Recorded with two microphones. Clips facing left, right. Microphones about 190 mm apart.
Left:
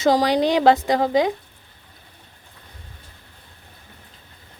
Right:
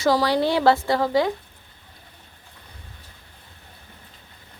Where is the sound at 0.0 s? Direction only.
20° left (ahead or behind).